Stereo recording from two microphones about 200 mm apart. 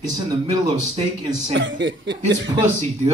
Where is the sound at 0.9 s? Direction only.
30° right (ahead or behind).